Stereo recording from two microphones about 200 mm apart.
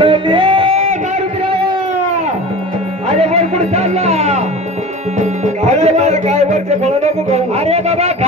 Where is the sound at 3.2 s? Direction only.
30° right (ahead or behind).